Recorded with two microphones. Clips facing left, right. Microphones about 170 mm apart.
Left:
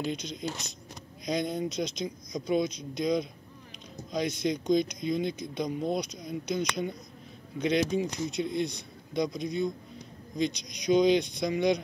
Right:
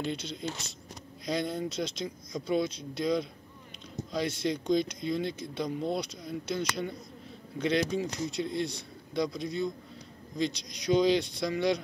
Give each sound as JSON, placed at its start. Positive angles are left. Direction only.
{"t": 0.0, "sound": "speech", "side_deg": 15}